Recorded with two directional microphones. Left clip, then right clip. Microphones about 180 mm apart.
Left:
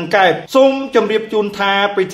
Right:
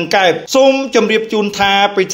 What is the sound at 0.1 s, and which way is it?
Speech, 30° right (ahead or behind).